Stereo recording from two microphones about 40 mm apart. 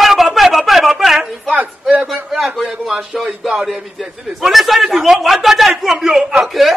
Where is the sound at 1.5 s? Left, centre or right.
Right.